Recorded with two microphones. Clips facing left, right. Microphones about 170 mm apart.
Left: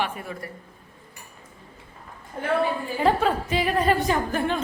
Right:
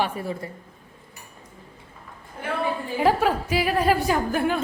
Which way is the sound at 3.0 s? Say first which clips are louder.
Right 1 dB; 5° right (ahead or behind).